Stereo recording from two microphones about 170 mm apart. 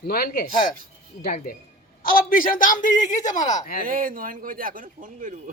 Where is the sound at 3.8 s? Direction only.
55° right (ahead or behind).